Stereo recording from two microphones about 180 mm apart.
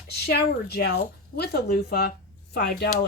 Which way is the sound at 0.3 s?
60° left (ahead or behind).